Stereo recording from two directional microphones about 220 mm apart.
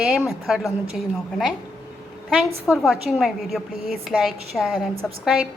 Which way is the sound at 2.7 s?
Centre (ahead or behind).